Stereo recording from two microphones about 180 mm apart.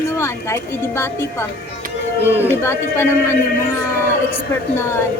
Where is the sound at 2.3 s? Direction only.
15° left (ahead or behind).